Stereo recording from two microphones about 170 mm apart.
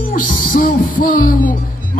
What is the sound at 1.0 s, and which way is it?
Speech, 55° left (ahead or behind).